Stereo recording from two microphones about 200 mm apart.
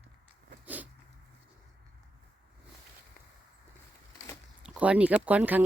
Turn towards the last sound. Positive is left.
turn(degrees=-10)  # may be behind; listen again after turning